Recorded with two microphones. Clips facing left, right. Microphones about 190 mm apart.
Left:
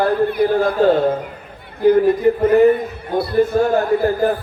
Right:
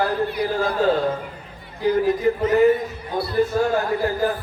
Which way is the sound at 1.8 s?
55° left (ahead or behind).